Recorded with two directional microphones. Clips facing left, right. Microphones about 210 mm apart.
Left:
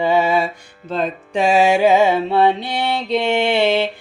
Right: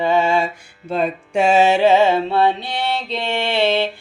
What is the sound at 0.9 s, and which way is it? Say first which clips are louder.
Music: right 1 dB; 10° right (ahead or behind).